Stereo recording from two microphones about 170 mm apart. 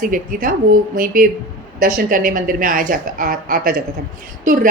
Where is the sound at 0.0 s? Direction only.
55° right (ahead or behind).